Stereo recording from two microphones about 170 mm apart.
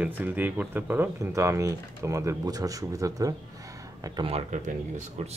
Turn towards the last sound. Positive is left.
turn(degrees=-40)  # may be behind; listen again after turning